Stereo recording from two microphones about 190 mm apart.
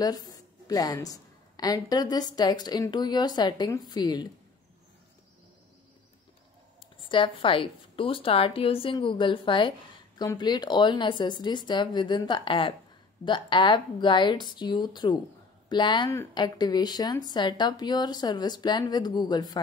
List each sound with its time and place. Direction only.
0.0 s a woman's voice: 20° left (ahead or behind)
7.0 s a woman's voice: 25° left (ahead or behind)